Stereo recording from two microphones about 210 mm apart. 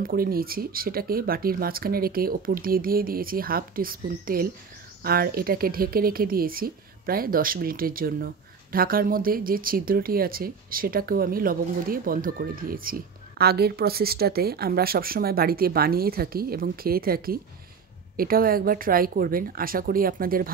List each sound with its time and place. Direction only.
0.0 s a woman's voice: 45° right (ahead or behind)